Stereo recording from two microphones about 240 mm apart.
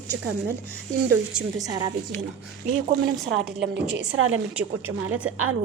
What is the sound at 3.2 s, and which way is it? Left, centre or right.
A woman's voice, right.